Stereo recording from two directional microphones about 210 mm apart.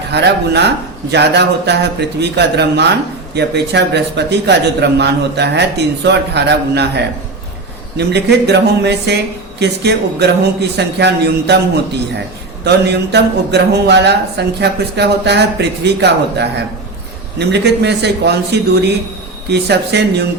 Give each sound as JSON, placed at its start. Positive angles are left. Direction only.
{"t": 0.1, "sound": "speech", "side_deg": -55}
{"t": 12.6, "sound": "speech", "side_deg": -50}